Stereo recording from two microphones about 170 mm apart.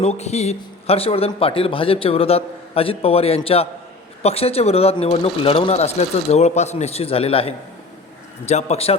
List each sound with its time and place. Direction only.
0.0 s a man's voice: 40° left (ahead or behind)